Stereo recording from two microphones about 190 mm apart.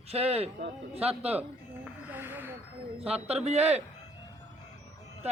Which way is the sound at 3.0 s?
30° right (ahead or behind).